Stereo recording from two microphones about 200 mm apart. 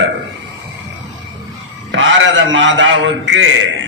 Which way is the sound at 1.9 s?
70° right (ahead or behind).